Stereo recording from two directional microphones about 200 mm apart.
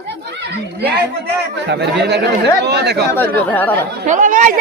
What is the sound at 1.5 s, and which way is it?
Speech, 55° right (ahead or behind).